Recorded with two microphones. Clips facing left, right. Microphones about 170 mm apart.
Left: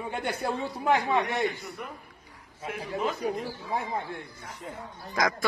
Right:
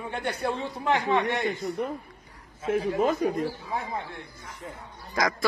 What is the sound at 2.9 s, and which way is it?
Speech, 45° right (ahead or behind).